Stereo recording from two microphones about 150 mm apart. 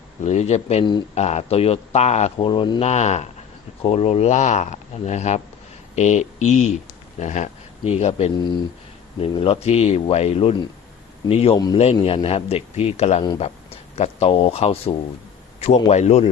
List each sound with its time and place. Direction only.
0.2 s speech: 50° left (ahead or behind)
2.5 s speech: 35° left (ahead or behind)
11.5 s a man's voice: 25° left (ahead or behind)
11.8 s speech: 40° left (ahead or behind)